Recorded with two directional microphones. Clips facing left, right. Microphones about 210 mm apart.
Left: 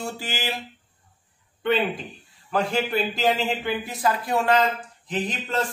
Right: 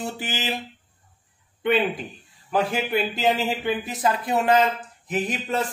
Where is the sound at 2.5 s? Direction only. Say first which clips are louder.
Right 1 dB; 5° right (ahead or behind).